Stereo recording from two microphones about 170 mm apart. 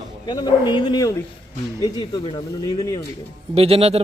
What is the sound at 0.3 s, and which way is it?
Speech, 25° left (ahead or behind).